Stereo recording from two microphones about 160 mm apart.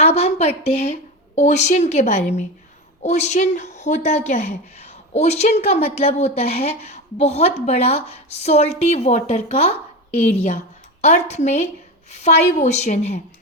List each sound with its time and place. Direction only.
0.0 s speech: 40° left (ahead or behind)